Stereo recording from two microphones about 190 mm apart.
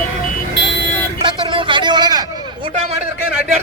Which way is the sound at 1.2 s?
25° right (ahead or behind).